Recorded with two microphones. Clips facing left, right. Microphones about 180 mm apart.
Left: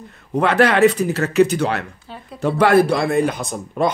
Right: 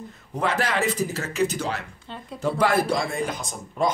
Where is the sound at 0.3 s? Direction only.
70° left (ahead or behind).